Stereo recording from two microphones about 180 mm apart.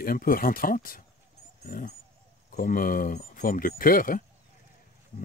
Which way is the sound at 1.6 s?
55° left (ahead or behind).